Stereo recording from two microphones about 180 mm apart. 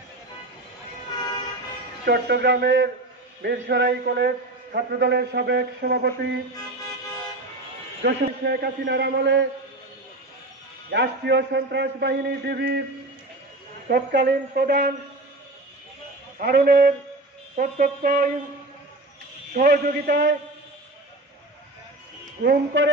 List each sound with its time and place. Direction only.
1.1 s toot: 25° left (ahead or behind)
2.0 s a man's voice: 65° right (ahead or behind)
8.0 s a man's voice: 65° right (ahead or behind)
10.9 s a man's voice: 75° right (ahead or behind)
13.8 s a man's voice: 60° right (ahead or behind)
16.3 s a man's voice: 55° right (ahead or behind)
19.5 s a man's voice: 55° right (ahead or behind)
22.4 s a man's voice: 60° right (ahead or behind)